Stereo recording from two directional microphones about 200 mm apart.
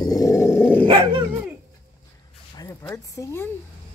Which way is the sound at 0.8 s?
20° right (ahead or behind).